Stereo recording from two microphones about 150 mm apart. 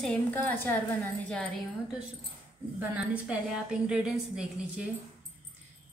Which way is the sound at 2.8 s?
5° right (ahead or behind).